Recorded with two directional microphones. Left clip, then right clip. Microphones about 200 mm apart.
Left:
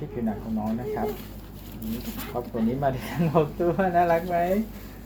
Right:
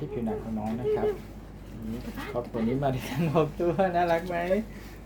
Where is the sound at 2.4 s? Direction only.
5° right (ahead or behind).